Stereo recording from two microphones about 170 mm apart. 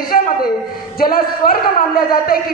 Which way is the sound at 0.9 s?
60° left (ahead or behind).